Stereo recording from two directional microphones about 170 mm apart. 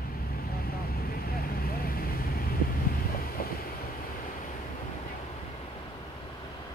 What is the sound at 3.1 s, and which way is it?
Wind noise, 60° left (ahead or behind).